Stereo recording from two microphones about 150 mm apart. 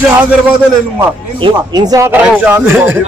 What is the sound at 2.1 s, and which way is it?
Speech, 10° right (ahead or behind).